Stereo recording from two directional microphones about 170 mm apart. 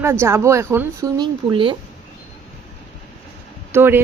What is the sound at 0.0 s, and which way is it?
Speech, 15° right (ahead or behind).